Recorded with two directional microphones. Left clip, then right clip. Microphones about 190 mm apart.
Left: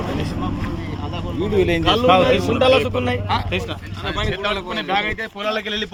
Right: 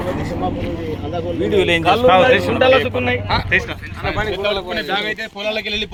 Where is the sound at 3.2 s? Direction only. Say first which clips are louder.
Right 2 dB; 85° left.